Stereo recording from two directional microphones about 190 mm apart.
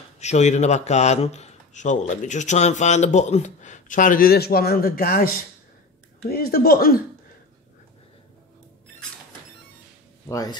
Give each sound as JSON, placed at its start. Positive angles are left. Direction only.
{"t": 0.2, "sound": "speech", "side_deg": 35}
{"t": 10.2, "sound": "speech", "side_deg": 20}